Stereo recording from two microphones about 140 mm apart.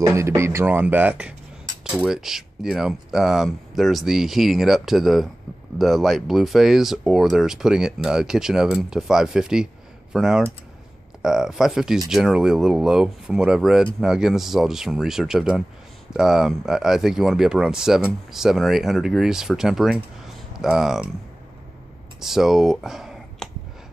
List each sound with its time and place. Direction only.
0.0 s speech: 20° right (ahead or behind); by 21.1 s centre (ahead or behind)
22.2 s speech: centre (ahead or behind)